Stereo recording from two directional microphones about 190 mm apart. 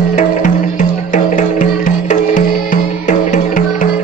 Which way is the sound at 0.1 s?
40° left (ahead or behind).